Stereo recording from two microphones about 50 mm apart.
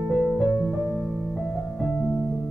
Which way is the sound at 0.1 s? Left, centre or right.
Centre.